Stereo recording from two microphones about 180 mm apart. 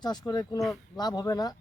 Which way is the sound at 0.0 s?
25° left (ahead or behind).